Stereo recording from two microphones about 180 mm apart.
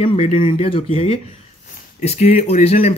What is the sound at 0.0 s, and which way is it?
Speech, 35° left (ahead or behind).